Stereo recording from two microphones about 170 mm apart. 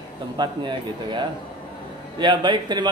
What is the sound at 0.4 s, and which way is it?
Speech, 30° right (ahead or behind).